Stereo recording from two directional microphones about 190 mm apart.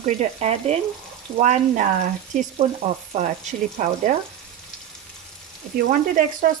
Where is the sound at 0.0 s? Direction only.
35° right (ahead or behind).